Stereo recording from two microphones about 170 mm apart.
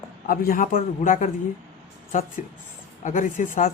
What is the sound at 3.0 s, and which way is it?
Speech, 50° left (ahead or behind).